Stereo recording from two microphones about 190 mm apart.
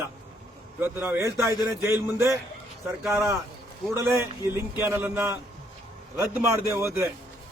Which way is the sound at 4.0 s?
15° right (ahead or behind).